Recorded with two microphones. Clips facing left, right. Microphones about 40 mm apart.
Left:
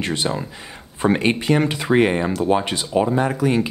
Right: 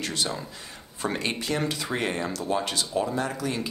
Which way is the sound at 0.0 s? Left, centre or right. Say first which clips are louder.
Left 7 dB; left.